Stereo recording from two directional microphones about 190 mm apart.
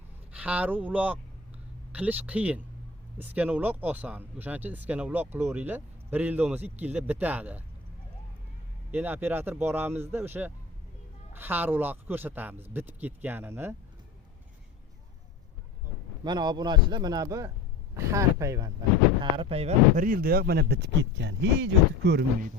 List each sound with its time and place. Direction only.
0.3 s speech: 5° right (ahead or behind)
8.9 s speech: 10° right (ahead or behind)
16.2 s a man's voice: 20° right (ahead or behind)
19.2 s speech: 30° right (ahead or behind); by 22.2 s 65° right (ahead or behind)